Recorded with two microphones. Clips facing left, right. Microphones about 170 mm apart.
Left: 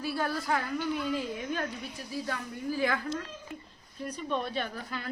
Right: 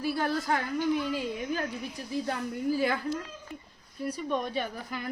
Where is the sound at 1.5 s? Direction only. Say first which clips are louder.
Right 2 dB; 10° right (ahead or behind).